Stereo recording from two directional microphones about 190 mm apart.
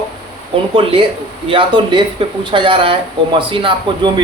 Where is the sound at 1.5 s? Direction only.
25° right (ahead or behind).